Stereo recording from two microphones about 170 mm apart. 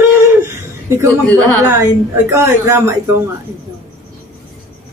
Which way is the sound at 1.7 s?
15° right (ahead or behind).